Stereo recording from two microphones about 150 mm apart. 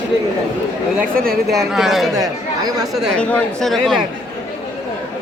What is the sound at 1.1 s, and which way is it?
Speech, 80° right.